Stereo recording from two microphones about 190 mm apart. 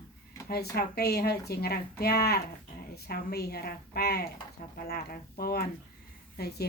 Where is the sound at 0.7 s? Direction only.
55° left (ahead or behind).